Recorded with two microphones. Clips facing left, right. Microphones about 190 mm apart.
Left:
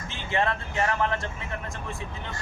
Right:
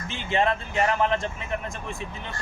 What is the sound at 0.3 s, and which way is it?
Speech, 20° right (ahead or behind).